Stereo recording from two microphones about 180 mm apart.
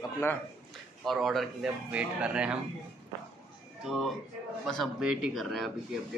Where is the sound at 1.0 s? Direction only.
Centre (ahead or behind).